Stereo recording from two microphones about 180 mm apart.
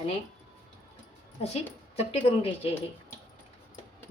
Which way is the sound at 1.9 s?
35° left (ahead or behind).